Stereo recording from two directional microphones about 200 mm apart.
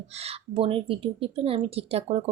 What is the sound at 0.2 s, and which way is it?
Speech, 30° right (ahead or behind).